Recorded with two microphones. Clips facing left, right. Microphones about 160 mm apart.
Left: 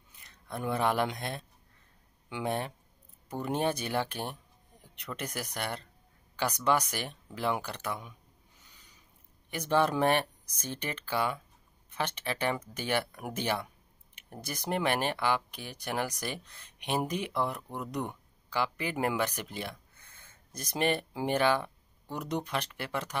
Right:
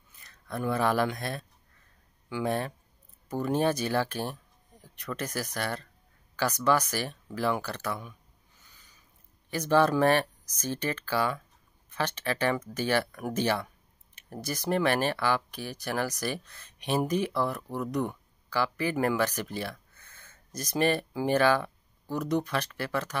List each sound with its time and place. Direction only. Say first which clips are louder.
0.2 s speech: right 3 dB; 20° left (ahead or behind)
9.5 s speech: right 4 dB; 20° left (ahead or behind)